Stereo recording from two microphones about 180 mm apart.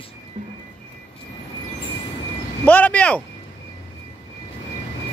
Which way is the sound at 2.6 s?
10° left (ahead or behind).